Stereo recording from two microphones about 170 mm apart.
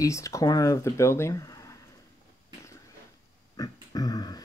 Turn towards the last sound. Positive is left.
turn(degrees=20)  # may be behind; listen again after turning